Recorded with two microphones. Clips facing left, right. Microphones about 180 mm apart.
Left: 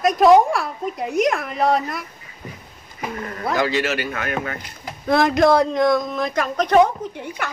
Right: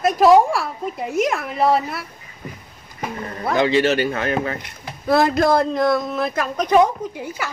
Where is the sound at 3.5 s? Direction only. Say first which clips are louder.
Right 5 dB; 25° right (ahead or behind).